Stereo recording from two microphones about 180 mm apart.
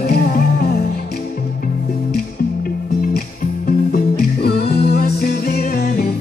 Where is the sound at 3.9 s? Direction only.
60° left (ahead or behind).